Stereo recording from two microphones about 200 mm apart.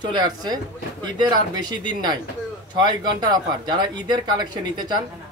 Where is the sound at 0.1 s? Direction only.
20° right (ahead or behind).